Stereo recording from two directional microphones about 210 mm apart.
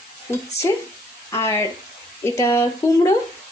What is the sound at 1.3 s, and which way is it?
Speech, 15° left (ahead or behind).